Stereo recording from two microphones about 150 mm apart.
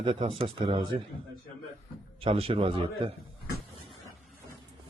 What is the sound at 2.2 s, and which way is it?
Speech, 40° right (ahead or behind).